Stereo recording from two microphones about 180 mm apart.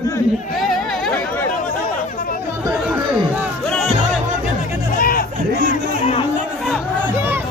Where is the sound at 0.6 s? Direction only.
Centre (ahead or behind).